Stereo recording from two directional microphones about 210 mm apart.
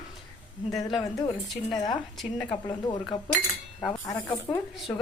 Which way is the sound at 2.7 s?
20° left (ahead or behind).